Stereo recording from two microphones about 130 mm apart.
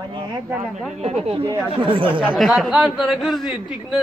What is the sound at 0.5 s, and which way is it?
Speech, 10° right (ahead or behind).